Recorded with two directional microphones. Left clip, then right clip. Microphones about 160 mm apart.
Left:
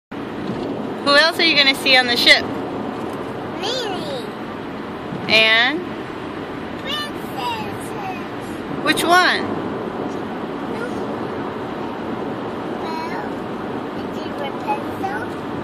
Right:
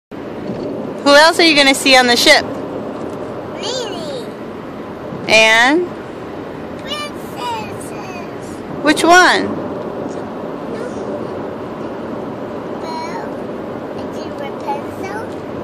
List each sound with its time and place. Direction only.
1.0 s speech: 65° right (ahead or behind)
5.3 s speech: 60° right (ahead or behind)
8.8 s speech: 50° right (ahead or behind)